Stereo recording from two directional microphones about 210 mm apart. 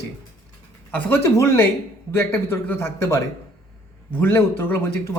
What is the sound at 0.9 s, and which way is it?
A man's voice, 10° left (ahead or behind).